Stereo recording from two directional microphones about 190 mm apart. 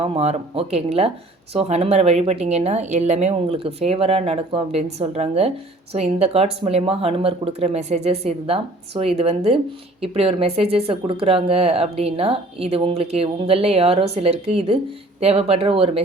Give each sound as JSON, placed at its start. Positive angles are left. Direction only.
{"t": 0.0, "sound": "speech", "side_deg": -35}